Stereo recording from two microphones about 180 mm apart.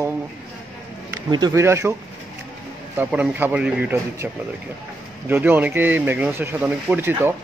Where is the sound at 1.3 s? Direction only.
20° right (ahead or behind).